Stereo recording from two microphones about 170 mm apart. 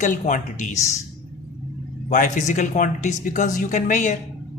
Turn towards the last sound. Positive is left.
turn(degrees=45)  # may be behind; listen again after turning